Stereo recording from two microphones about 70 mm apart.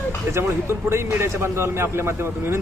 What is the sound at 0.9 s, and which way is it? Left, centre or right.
A man's voice, right.